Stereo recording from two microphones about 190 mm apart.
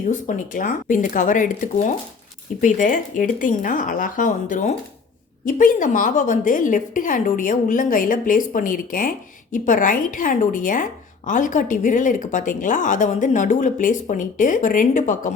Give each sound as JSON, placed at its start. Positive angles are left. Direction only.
{"t": 0.1, "sound": "a woman's voice", "side_deg": 45}